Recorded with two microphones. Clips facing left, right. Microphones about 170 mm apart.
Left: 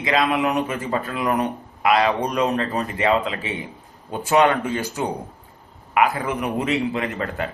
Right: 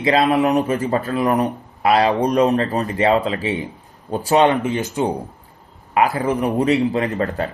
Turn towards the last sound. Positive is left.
turn(degrees=-35)  # may be behind; listen again after turning